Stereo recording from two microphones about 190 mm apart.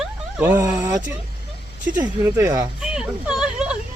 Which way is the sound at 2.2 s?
15° right (ahead or behind).